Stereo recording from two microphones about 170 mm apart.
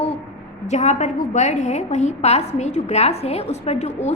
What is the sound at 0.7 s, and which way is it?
A woman's voice, 40° left (ahead or behind).